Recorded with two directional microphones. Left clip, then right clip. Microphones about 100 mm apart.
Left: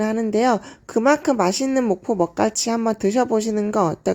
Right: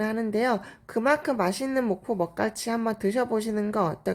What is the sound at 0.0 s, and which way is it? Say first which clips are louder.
Speech: left 7 dB; 40° left (ahead or behind).